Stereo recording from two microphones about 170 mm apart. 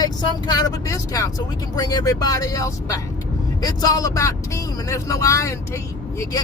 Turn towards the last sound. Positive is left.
turn(degrees=15)  # may be behind; listen again after turning